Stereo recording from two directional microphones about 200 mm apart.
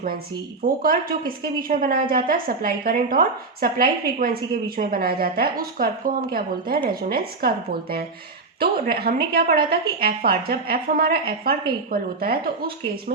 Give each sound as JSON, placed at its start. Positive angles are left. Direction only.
{"t": 0.6, "sound": "speech", "side_deg": -45}